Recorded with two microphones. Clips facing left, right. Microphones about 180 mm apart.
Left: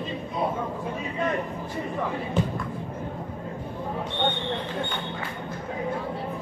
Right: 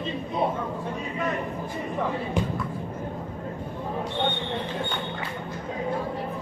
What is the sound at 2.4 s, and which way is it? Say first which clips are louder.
Speech: left 2 dB; 15° right (ahead or behind).